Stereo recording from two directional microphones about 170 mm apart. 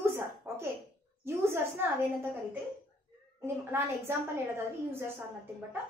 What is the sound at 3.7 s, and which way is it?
A child's voice, 15° right (ahead or behind).